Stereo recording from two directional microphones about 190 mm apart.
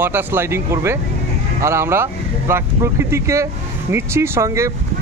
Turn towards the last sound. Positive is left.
turn(degrees=-15)  # may be behind; listen again after turning